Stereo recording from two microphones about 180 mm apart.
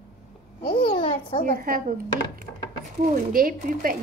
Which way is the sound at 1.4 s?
50° right (ahead or behind).